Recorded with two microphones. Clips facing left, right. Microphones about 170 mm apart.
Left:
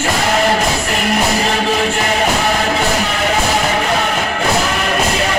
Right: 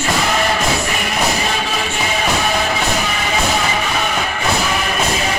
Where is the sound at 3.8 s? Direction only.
70° left (ahead or behind).